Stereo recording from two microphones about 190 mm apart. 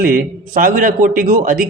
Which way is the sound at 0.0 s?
45° right (ahead or behind).